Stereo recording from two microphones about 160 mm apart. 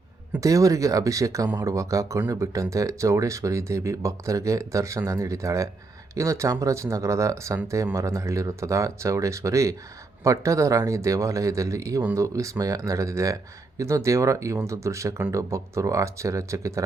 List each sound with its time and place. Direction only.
0.3 s speech: 20° right (ahead or behind)